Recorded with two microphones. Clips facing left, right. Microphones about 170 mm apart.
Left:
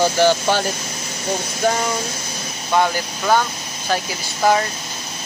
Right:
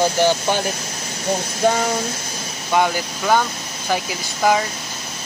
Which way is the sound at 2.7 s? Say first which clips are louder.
Even; 10° right (ahead or behind).